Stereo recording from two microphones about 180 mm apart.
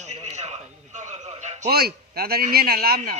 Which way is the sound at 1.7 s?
60° right (ahead or behind).